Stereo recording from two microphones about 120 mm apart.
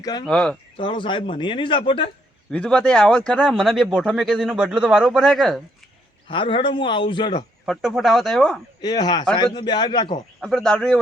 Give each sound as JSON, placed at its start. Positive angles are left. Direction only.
{"t": 0.0, "sound": "a man's voice", "side_deg": 35}
{"t": 0.3, "sound": "speech", "side_deg": 5}
{"t": 0.8, "sound": "speech", "side_deg": 45}
{"t": 2.5, "sound": "speech", "side_deg": 10}
{"t": 4.3, "sound": "speech", "side_deg": -5}
{"t": 6.2, "sound": "speech", "side_deg": 45}
{"t": 7.7, "sound": "speech", "side_deg": 0}
{"t": 8.8, "sound": "a man's voice", "side_deg": 35}
{"t": 10.4, "sound": "speech", "side_deg": 5}